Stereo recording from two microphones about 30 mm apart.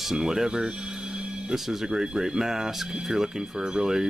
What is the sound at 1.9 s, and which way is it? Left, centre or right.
Speech, right.